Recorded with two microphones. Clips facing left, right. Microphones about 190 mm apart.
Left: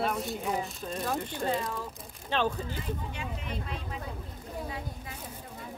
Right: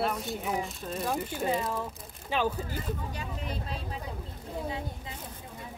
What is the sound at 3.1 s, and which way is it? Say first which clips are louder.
Speech: right 1 dB; 35° right (ahead or behind).